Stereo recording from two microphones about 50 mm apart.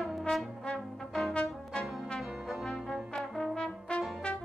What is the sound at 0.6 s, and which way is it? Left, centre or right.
Brass instrument, centre.